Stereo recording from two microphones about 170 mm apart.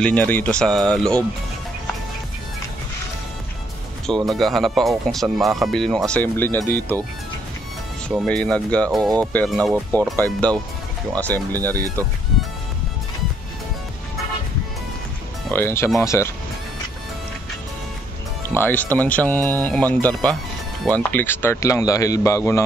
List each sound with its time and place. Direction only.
0.0 s speech: 10° left (ahead or behind)
4.3 s speech: centre (ahead or behind)
8.1 s speech: centre (ahead or behind)
11.8 s speech: 20° right (ahead or behind)
15.5 s speech: 15° left (ahead or behind)
18.5 s speech: 10° left (ahead or behind)